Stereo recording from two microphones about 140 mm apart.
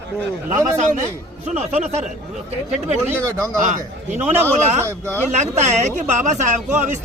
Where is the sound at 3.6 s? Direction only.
60° right (ahead or behind).